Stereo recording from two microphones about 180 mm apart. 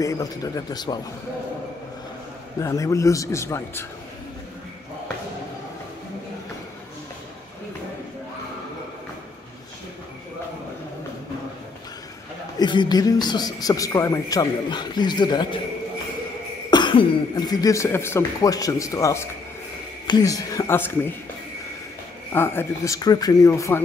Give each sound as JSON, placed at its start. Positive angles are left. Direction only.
{"t": 0.0, "sound": "speech", "side_deg": 20}
{"t": 2.6, "sound": "speech", "side_deg": 20}
{"t": 12.5, "sound": "speech", "side_deg": 25}
{"t": 16.7, "sound": "speech", "side_deg": 25}
{"t": 22.3, "sound": "speech", "side_deg": 10}